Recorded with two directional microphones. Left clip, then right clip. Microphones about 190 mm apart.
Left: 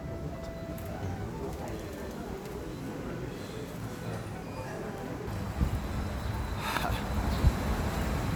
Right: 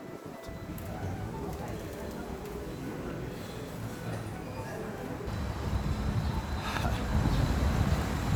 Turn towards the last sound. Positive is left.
turn(degrees=15)  # may be behind; listen again after turning